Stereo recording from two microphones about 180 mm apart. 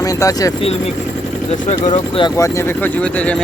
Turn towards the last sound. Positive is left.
turn(degrees=15)  # may be behind; listen again after turning